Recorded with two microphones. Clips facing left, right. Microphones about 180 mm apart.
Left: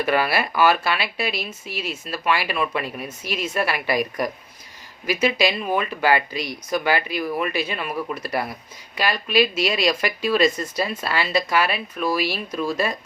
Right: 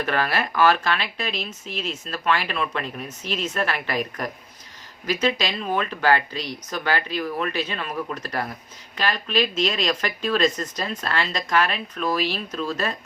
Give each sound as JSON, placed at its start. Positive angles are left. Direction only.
{"t": 0.0, "sound": "speech", "side_deg": 10}